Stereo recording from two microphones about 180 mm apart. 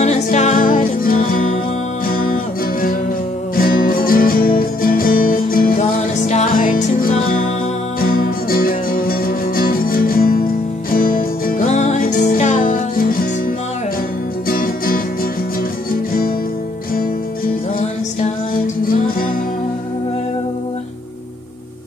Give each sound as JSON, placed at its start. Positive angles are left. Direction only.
{"t": 0.0, "sound": "music", "side_deg": 40}
{"t": 14.5, "sound": "music", "side_deg": 50}